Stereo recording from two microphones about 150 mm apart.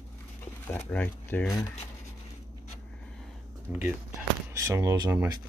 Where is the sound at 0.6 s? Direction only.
15° left (ahead or behind).